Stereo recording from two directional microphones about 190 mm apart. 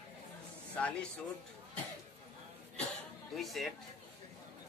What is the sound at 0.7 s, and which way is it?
Speech, 5° left (ahead or behind).